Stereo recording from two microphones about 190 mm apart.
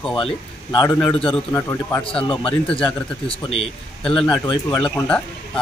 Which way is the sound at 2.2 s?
25° left (ahead or behind).